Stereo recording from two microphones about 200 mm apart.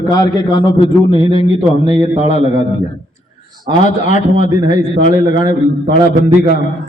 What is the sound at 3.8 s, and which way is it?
Speech, 35° left (ahead or behind).